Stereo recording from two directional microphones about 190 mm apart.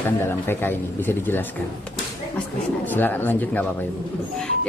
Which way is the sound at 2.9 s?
10° left (ahead or behind).